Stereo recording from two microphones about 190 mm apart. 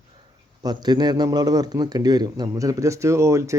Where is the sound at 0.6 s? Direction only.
20° right (ahead or behind).